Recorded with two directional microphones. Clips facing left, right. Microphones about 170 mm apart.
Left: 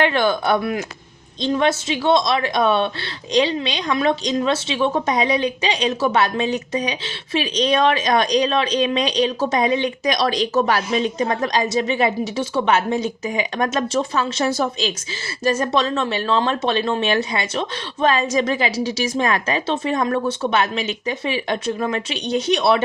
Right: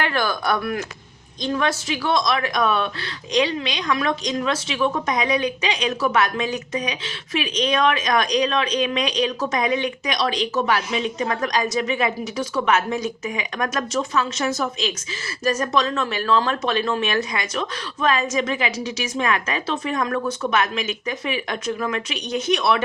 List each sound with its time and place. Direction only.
0.0 s a woman's voice: 25° left (ahead or behind)